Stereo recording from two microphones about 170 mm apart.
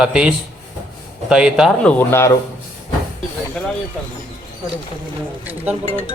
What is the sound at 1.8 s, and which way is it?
Speech, 10° left (ahead or behind).